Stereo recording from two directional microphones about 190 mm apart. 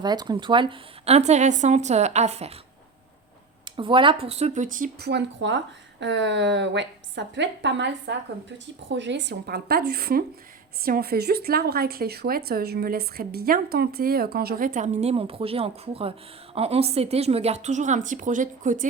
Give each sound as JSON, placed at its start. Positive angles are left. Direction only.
{"t": 0.0, "sound": "a woman's voice", "side_deg": -20}
{"t": 3.8, "sound": "a woman's voice", "side_deg": -25}
{"t": 5.0, "sound": "a woman's voice", "side_deg": -65}